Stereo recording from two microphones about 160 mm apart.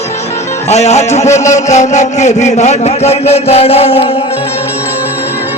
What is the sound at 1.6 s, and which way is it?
A man's voice, 45° left (ahead or behind).